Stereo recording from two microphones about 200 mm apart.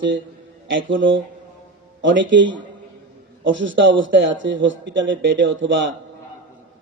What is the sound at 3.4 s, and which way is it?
Speech, 70° right (ahead or behind).